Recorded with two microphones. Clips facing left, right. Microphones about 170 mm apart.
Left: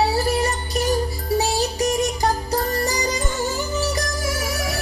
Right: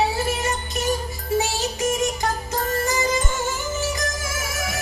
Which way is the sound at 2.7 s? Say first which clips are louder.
Even; 35° left (ahead or behind).